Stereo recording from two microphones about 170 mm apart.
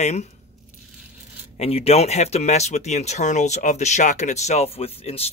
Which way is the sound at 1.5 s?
35° left (ahead or behind).